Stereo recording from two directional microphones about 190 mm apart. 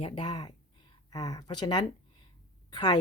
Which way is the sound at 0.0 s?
25° left (ahead or behind).